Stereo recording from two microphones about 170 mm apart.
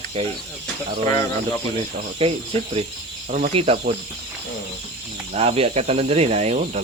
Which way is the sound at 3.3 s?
50° right (ahead or behind).